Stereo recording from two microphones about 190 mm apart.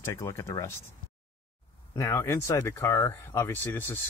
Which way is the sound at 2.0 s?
15° left (ahead or behind).